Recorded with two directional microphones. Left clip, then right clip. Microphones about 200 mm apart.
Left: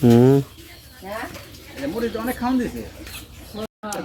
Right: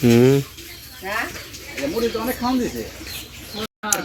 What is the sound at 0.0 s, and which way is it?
Speech, 15° left (ahead or behind).